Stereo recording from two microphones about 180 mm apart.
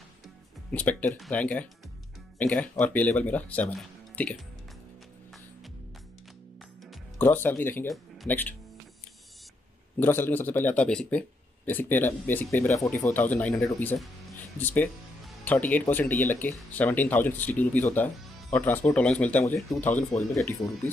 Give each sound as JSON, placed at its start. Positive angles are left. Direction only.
{"t": 0.7, "sound": "speech", "side_deg": 10}
{"t": 6.9, "sound": "speech", "side_deg": 10}
{"t": 7.9, "sound": "speech", "side_deg": 0}
{"t": 9.9, "sound": "speech", "side_deg": 10}